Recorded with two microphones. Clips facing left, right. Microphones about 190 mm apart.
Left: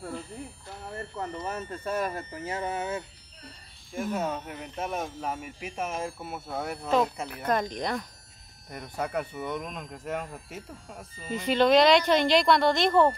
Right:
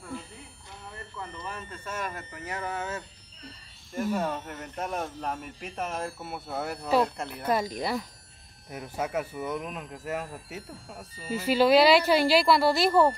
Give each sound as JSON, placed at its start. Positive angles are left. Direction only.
{"t": 0.9, "sound": "speech", "side_deg": 45}
{"t": 3.9, "sound": "speech", "side_deg": 5}